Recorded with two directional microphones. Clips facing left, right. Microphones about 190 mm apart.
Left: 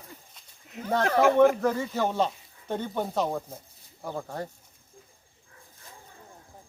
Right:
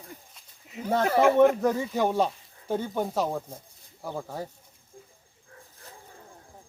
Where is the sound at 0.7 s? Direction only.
Centre (ahead or behind).